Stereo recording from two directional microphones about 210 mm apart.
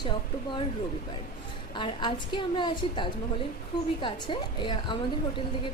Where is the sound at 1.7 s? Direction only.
25° left (ahead or behind).